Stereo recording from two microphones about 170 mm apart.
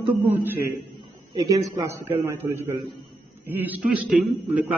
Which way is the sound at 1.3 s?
20° right (ahead or behind).